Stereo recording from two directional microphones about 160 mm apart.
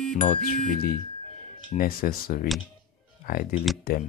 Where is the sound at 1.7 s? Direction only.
65° left (ahead or behind).